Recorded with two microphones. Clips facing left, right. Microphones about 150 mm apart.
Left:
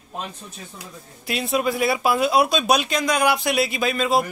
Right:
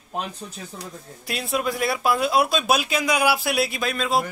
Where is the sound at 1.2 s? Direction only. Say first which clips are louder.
Left 3 dB; centre (ahead or behind).